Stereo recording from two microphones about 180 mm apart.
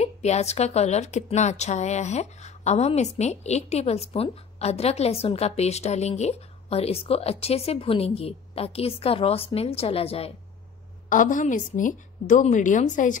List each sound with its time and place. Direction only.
0.0 s a woman's voice: 35° left (ahead or behind)
11.1 s a woman's voice: 50° left (ahead or behind)